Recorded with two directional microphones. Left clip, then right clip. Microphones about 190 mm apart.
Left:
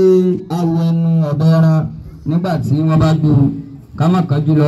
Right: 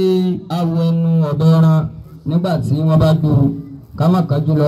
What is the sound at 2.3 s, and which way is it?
A man's voice, 20° right (ahead or behind).